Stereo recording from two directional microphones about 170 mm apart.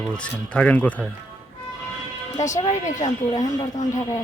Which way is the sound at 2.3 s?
45° left (ahead or behind).